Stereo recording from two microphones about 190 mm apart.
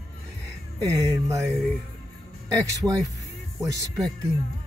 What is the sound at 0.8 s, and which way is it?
Speech, 15° right (ahead or behind).